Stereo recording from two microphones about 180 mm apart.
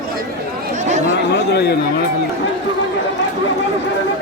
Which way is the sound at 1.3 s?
65° left (ahead or behind).